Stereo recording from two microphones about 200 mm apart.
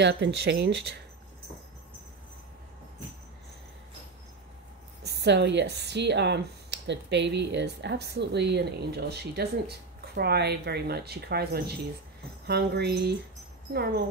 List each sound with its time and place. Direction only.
0.0 s speech: 60° right (ahead or behind)
5.0 s speech: 55° right (ahead or behind)